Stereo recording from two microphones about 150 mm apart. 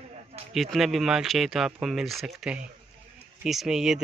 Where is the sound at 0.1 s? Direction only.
45° right (ahead or behind).